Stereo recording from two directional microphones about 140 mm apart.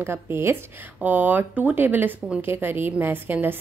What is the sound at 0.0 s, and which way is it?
A woman's voice, 15° right (ahead or behind).